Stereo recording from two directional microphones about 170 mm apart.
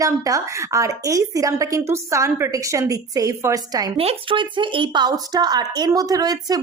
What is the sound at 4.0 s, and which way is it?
Speech, 30° right (ahead or behind).